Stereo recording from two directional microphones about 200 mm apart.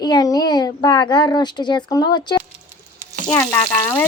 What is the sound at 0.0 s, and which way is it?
A child's voice, 20° left (ahead or behind).